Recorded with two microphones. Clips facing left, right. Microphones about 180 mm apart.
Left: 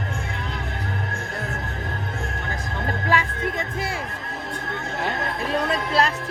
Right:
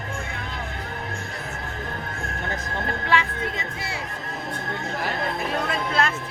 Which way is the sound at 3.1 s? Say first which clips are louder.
Left 1 dB; 45° left (ahead or behind).